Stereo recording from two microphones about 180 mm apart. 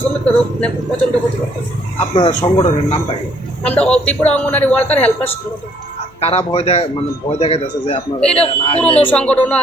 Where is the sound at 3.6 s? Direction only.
10° left (ahead or behind).